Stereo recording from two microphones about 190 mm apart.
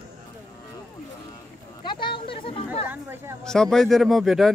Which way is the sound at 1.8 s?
25° left (ahead or behind).